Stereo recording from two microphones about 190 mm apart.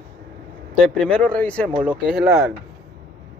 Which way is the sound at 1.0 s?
5° left (ahead or behind).